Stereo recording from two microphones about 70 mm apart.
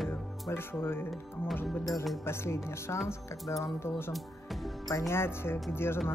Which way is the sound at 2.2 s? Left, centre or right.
Left.